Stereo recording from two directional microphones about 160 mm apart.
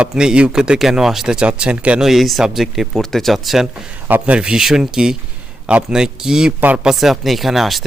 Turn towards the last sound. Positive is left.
turn(degrees=0)  # may be behind; listen again after turning